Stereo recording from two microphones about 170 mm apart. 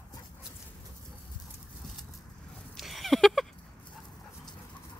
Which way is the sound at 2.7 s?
Centre (ahead or behind).